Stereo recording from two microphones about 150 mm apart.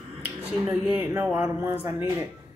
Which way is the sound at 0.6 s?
10° right (ahead or behind).